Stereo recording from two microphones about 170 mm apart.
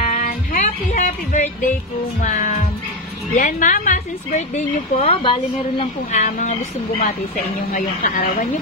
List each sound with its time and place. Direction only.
0.0 s music: 55° left (ahead or behind)
2.2 s speech: 45° left (ahead or behind)
4.6 s speech: 40° left (ahead or behind)
6.1 s speech: 50° left (ahead or behind)